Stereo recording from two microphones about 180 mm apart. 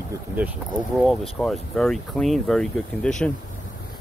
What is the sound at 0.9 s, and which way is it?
Speech, centre (ahead or behind).